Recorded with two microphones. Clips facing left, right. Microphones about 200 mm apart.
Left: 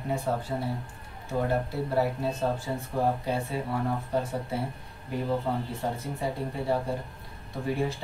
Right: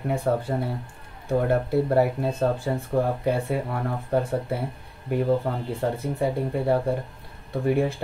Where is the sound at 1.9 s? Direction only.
55° right (ahead or behind).